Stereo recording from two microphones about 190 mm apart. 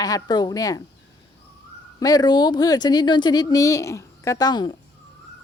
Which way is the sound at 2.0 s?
20° left (ahead or behind).